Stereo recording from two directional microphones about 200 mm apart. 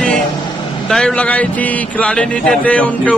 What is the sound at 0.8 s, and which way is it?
Music, 5° left (ahead or behind).